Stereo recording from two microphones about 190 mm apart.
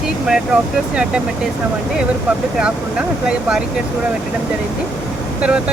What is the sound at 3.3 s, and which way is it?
Speech, 5° right (ahead or behind).